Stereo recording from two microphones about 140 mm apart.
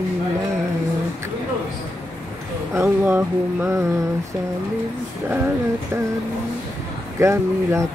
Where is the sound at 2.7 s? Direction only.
15° right (ahead or behind).